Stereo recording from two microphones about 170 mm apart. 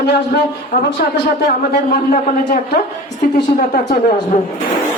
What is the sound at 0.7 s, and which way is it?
Speech, 70° left (ahead or behind).